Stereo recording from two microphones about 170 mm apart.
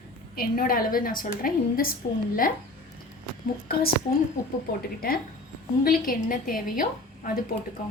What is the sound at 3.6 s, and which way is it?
Speech, 60° left (ahead or behind).